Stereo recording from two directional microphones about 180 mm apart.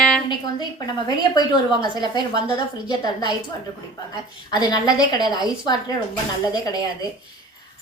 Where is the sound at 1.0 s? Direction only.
20° left (ahead or behind).